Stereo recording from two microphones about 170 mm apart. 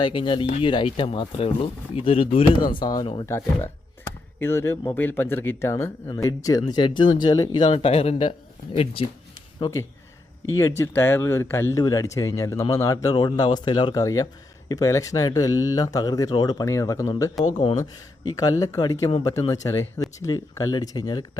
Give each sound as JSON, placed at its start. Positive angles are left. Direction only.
{"t": 0.0, "sound": "speech", "side_deg": 30}
{"t": 3.2, "sound": "speech", "side_deg": 15}
{"t": 7.7, "sound": "speech", "side_deg": 35}
{"t": 9.6, "sound": "speech", "side_deg": 25}
{"t": 17.6, "sound": "speech", "side_deg": 30}